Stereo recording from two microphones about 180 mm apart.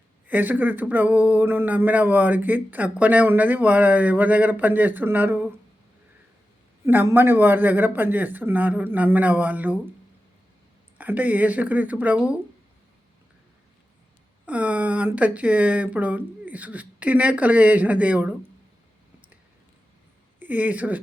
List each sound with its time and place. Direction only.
0.3 s speech: 10° right (ahead or behind)
6.8 s speech: 10° right (ahead or behind)
10.9 s speech: 10° right (ahead or behind)
14.4 s speech: 5° right (ahead or behind)
20.4 s speech: 10° right (ahead or behind)